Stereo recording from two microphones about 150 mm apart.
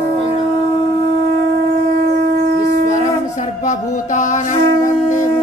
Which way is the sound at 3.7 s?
55° left (ahead or behind).